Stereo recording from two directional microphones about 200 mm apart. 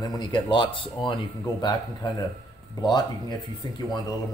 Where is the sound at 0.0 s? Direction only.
20° left (ahead or behind).